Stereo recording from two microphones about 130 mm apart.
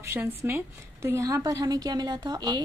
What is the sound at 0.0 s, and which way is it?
A woman's voice, 15° right (ahead or behind).